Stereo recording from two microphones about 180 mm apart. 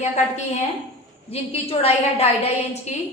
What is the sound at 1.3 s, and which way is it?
Speech, 35° left (ahead or behind).